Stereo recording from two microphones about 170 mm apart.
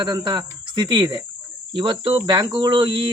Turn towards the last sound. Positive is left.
turn(degrees=-30)  # may be behind; listen again after turning